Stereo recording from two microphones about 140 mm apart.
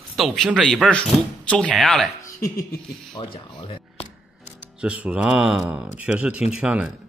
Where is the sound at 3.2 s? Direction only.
30° left (ahead or behind).